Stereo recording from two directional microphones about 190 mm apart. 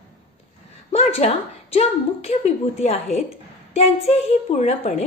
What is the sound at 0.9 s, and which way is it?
A woman's voice, 35° left (ahead or behind).